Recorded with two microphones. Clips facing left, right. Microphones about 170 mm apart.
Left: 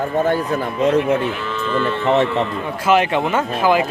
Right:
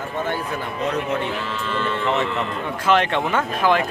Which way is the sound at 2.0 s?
35° left (ahead or behind).